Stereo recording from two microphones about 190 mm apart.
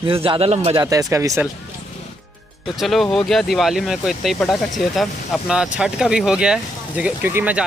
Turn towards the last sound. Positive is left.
turn(degrees=-10)  # may be behind; listen again after turning